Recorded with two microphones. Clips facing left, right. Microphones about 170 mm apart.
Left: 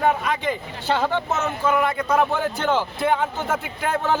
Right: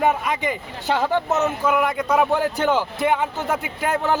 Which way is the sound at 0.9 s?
10° right (ahead or behind).